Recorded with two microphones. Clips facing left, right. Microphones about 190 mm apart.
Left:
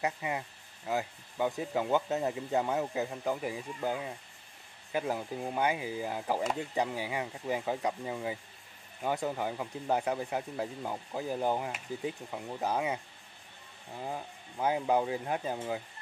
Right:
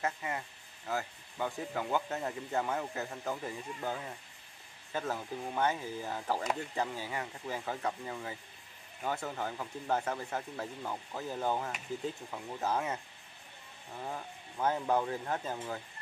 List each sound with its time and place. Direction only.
0.0 s speech: 15° left (ahead or behind)
14.0 s speech: 15° left (ahead or behind)